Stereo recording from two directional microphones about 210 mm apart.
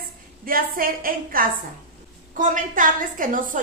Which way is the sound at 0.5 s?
45° right (ahead or behind).